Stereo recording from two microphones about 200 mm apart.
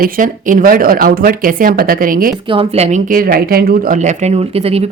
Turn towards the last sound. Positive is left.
turn(degrees=-30)  # may be behind; listen again after turning